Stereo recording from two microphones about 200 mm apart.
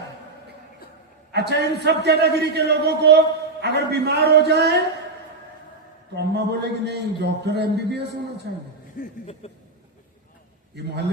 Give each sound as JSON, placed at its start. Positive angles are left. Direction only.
{"t": 1.3, "sound": "a man's voice", "side_deg": -55}
{"t": 6.1, "sound": "a man's voice", "side_deg": -55}
{"t": 9.0, "sound": "a sound", "side_deg": 45}
{"t": 9.4, "sound": "speech", "side_deg": 30}